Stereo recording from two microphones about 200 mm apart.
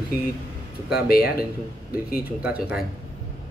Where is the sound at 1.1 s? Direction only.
50° left (ahead or behind).